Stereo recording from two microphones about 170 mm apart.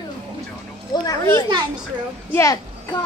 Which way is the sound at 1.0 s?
20° left (ahead or behind).